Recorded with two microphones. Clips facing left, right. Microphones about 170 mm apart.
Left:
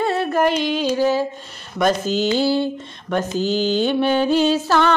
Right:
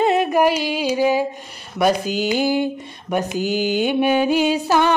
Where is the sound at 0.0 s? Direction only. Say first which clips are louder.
Right 2 dB; 15° right (ahead or behind).